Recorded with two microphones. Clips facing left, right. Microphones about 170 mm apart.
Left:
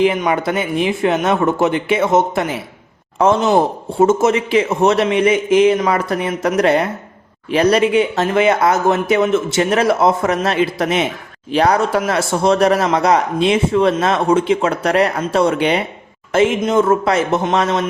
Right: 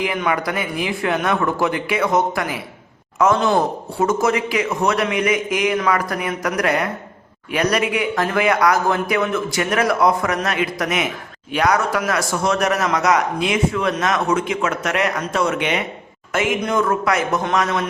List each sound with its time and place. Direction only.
0.0 s a man's voice: 25° left (ahead or behind)